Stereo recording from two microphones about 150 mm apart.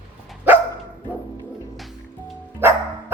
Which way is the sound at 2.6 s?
15° right (ahead or behind).